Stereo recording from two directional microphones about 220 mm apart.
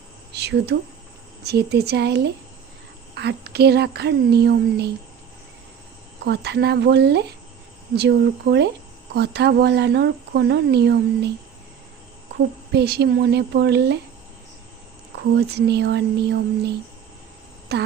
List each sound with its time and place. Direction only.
0.3 s speech: 50° right (ahead or behind)
6.2 s speech: 50° right (ahead or behind)
12.7 s speech: 50° right (ahead or behind)
15.4 s speech: 50° right (ahead or behind)